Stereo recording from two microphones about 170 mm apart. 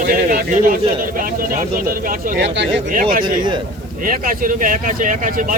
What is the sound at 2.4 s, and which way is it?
Speech, 90° right.